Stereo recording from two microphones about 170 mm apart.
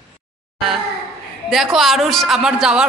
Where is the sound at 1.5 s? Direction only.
Centre (ahead or behind).